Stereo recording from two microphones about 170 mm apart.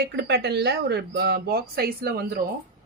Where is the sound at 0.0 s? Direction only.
85° right; by 2.4 s 65° right (ahead or behind).